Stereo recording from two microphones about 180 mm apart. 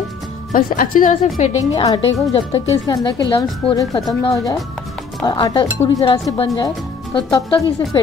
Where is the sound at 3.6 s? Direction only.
30° left (ahead or behind).